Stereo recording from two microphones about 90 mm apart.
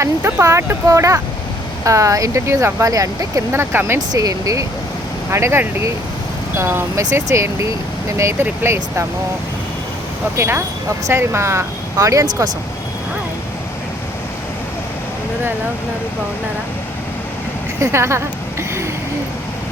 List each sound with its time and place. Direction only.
0.0 s speech: 30° right (ahead or behind)
3.5 s speech: 25° right (ahead or behind)
4.1 s speech: 45° right (ahead or behind)
5.3 s speech: 30° right (ahead or behind)
10.3 s speech: 30° right (ahead or behind)
17.7 s speech: 30° right (ahead or behind)